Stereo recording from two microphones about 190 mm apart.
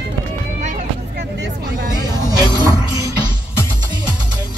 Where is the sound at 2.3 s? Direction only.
20° right (ahead or behind).